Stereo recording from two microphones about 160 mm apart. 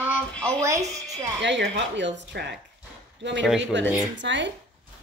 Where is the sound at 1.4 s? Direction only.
90° right.